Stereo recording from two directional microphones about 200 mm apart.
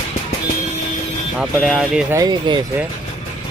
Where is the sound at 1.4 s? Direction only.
Centre (ahead or behind).